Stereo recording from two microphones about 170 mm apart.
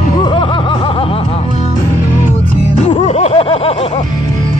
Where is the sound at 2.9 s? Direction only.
35° left (ahead or behind).